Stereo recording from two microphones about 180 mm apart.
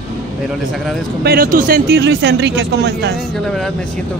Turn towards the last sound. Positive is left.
turn(degrees=5)  # may be behind; listen again after turning